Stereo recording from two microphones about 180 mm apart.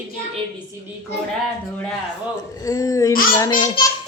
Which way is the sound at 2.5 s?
20° left (ahead or behind).